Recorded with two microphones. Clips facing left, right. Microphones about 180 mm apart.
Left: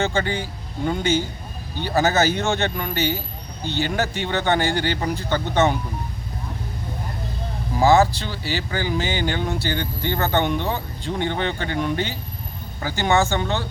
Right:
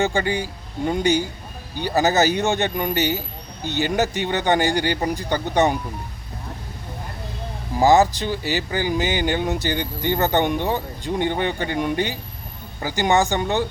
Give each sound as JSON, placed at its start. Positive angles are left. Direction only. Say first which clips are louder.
{"t": 0.0, "sound": "speech", "louder": "right 2 dB", "side_deg": -15}
{"t": 1.8, "sound": "speech", "louder": "right 1 dB", "side_deg": -15}
{"t": 7.8, "sound": "speech", "louder": "right 1 dB", "side_deg": -15}